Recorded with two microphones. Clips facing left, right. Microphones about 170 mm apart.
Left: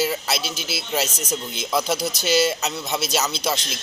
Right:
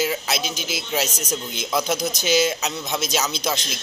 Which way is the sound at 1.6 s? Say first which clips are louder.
Even; 5° left (ahead or behind).